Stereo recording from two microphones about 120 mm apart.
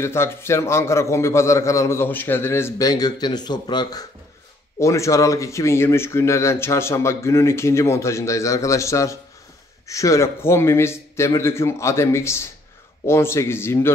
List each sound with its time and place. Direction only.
0.0 s speech: 20° left (ahead or behind)
2.8 s speech: 35° left (ahead or behind)